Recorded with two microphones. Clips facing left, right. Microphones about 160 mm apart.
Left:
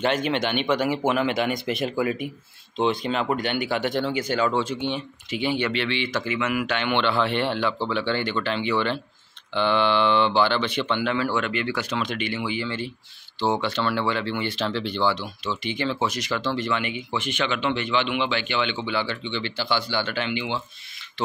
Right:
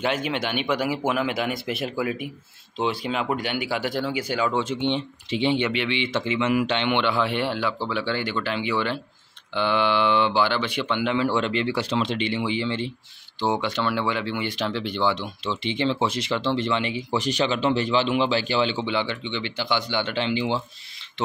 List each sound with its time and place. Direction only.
0.0 s speech: 5° right (ahead or behind)
4.6 s speech: 25° right (ahead or behind)